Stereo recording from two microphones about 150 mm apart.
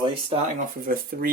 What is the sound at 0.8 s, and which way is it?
Speech, 75° right (ahead or behind).